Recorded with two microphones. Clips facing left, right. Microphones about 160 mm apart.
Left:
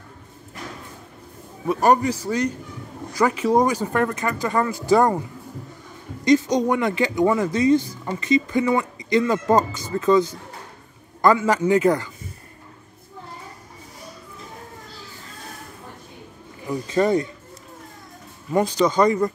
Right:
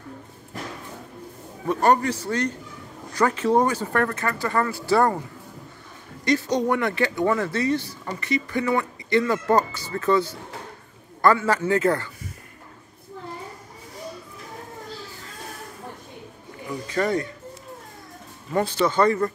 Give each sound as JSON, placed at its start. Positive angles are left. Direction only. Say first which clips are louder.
{"t": 1.7, "sound": "speech", "louder": "left 2 dB", "side_deg": 10}
{"t": 6.2, "sound": "speech", "louder": "left 4 dB", "side_deg": 20}
{"t": 16.9, "sound": "speech", "louder": "left 4 dB", "side_deg": 20}
{"t": 18.5, "sound": "speech", "louder": "left 3 dB", "side_deg": 15}